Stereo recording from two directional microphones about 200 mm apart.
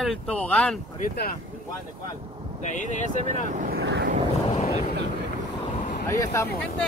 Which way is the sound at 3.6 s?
50° right (ahead or behind).